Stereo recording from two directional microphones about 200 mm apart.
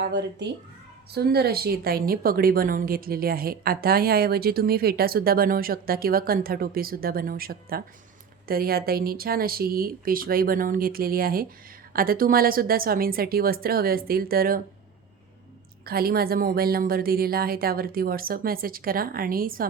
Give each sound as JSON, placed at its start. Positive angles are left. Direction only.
{"t": 0.0, "sound": "a woman's voice", "side_deg": -60}
{"t": 15.9, "sound": "a woman's voice", "side_deg": -50}